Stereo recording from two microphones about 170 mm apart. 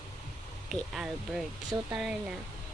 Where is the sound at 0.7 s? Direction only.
Centre (ahead or behind).